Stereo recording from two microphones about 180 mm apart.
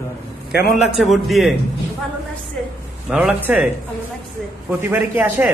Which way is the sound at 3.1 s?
5° right (ahead or behind).